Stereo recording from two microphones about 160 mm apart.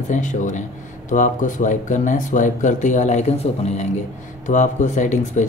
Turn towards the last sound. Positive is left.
turn(degrees=50)  # may be behind; listen again after turning